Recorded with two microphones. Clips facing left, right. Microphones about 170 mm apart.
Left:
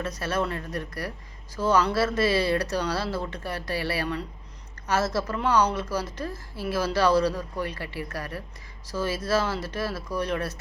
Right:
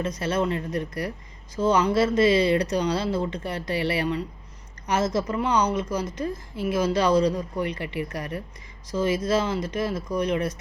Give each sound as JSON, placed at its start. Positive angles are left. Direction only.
{"t": 0.2, "sound": "speech", "side_deg": -20}